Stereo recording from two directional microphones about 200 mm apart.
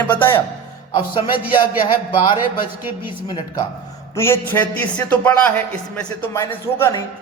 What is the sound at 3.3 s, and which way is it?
A man's voice, 20° left (ahead or behind).